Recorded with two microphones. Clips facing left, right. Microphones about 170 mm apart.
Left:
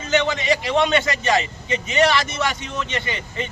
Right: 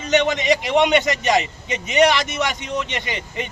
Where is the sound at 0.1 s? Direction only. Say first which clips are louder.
Right 2 dB; 20° right (ahead or behind).